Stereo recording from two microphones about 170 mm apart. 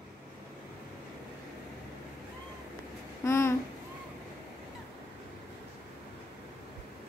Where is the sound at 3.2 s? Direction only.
15° left (ahead or behind).